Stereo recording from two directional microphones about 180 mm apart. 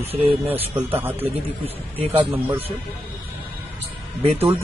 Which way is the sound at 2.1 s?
10° right (ahead or behind).